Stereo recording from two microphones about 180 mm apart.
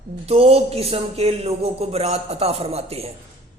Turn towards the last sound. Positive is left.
turn(degrees=-35)  # may be behind; listen again after turning